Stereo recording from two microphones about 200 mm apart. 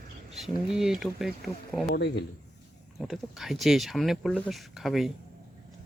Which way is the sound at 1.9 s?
55° left (ahead or behind).